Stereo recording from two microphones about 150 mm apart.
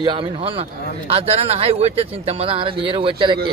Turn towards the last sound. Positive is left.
turn(degrees=-35)  # may be behind; listen again after turning